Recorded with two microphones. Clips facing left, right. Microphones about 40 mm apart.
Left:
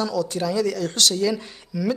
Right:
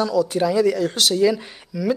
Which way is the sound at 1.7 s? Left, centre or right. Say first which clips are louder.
Right 1 dB; centre.